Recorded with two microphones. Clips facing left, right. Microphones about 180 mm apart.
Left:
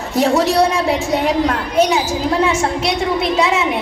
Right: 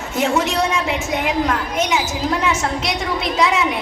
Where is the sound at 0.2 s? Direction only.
35° left (ahead or behind).